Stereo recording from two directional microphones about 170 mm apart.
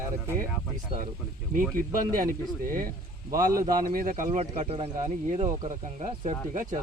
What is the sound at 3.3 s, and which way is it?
Speech, 55° right (ahead or behind).